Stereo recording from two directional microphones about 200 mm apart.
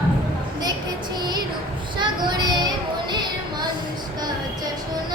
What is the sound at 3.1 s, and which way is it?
Music, 20° right (ahead or behind).